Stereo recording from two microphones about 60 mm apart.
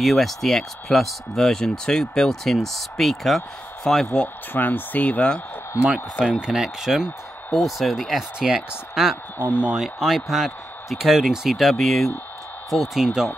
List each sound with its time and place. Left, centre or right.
0.0 s speech: centre
4.6 s speech: left
6.3 s speech: centre